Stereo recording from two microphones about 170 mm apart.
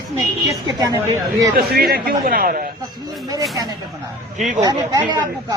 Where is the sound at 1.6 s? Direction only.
65° right (ahead or behind).